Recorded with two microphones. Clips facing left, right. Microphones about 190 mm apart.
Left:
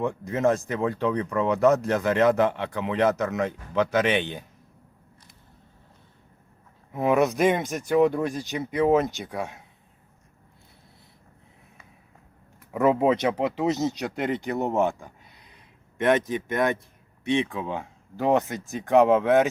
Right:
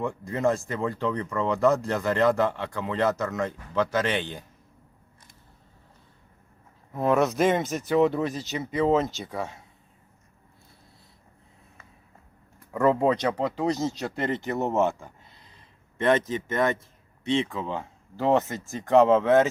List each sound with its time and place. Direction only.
0.0 s speech: 15° left (ahead or behind)
6.9 s speech: 15° left (ahead or behind)
12.7 s speech: 15° left (ahead or behind)
16.0 s speech: 15° left (ahead or behind)